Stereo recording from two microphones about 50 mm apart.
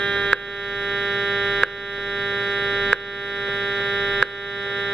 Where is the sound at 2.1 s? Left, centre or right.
Centre.